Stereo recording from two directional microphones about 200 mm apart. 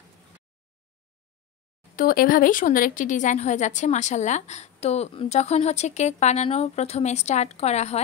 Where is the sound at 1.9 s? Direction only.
45° left (ahead or behind).